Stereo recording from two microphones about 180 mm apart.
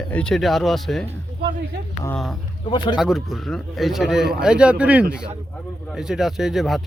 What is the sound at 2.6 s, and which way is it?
Speech, 25° left (ahead or behind).